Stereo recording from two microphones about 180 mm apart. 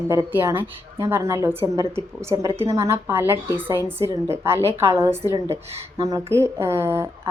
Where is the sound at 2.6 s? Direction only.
15° right (ahead or behind).